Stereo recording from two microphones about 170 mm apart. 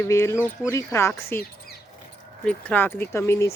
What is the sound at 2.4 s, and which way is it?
A woman's voice, 5° left (ahead or behind).